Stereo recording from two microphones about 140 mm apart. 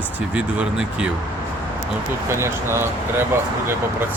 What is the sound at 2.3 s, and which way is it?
Speech, 20° right (ahead or behind).